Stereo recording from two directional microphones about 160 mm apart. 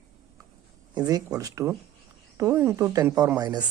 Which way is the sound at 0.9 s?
25° right (ahead or behind).